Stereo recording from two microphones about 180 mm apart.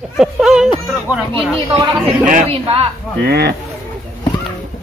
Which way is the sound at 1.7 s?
25° right (ahead or behind).